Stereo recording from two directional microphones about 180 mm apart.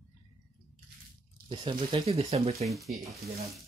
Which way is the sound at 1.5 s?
25° right (ahead or behind).